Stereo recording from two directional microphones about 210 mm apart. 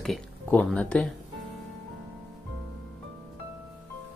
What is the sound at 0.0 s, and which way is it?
Speech, 5° left (ahead or behind).